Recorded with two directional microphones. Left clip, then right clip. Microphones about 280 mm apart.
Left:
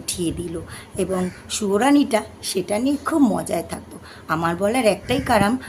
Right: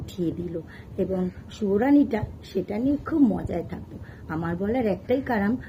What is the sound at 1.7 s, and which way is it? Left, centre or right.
A woman's voice, centre.